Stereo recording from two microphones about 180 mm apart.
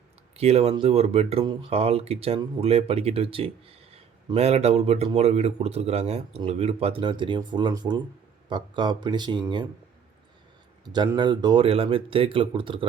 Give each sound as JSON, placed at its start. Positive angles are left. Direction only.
{"t": 0.3, "sound": "speech", "side_deg": -35}
{"t": 10.8, "sound": "speech", "side_deg": -25}